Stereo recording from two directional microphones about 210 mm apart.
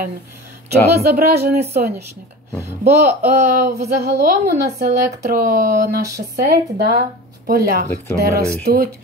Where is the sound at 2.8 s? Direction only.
35° right (ahead or behind).